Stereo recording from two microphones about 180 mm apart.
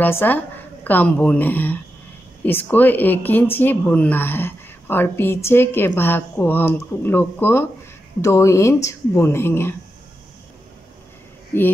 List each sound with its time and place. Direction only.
0.0 s a woman's voice: 10° left (ahead or behind)